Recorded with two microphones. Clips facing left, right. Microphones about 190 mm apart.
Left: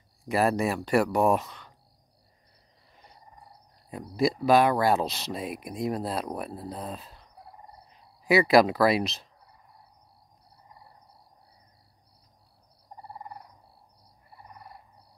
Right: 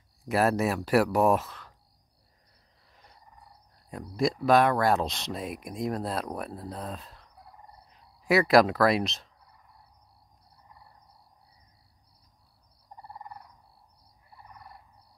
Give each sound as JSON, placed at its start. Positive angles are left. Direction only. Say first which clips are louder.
{"t": 0.2, "sound": "speech", "louder": "even", "side_deg": 0}
{"t": 3.9, "sound": "speech", "louder": "left 2 dB", "side_deg": 0}
{"t": 13.1, "sound": "a sound", "louder": "left 2 dB", "side_deg": 25}